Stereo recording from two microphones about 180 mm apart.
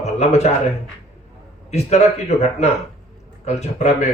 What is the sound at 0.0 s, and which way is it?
Speech, 35° left (ahead or behind).